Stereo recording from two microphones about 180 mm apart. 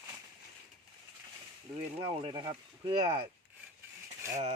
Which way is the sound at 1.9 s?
25° right (ahead or behind).